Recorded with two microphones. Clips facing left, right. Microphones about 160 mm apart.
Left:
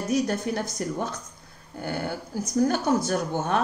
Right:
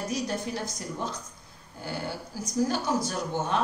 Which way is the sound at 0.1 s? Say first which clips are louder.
Left 10 dB; 60° left (ahead or behind).